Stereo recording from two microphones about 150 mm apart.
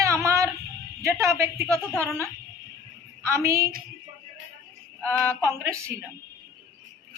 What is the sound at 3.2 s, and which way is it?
Speech, 20° right (ahead or behind).